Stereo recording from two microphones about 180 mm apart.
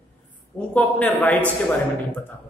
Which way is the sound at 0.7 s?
10° left (ahead or behind).